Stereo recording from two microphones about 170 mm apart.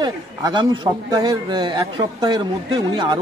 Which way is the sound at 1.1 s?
25° right (ahead or behind).